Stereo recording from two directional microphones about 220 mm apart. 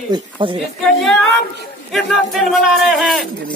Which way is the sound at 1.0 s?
Centre (ahead or behind).